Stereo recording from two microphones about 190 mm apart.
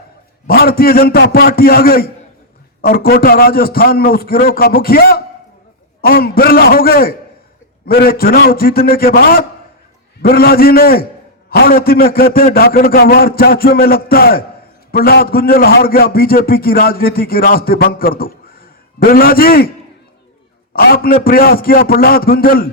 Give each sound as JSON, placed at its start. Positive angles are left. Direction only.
{"t": 0.4, "sound": "a man's voice", "side_deg": 50}
{"t": 20.7, "sound": "a man's voice", "side_deg": 50}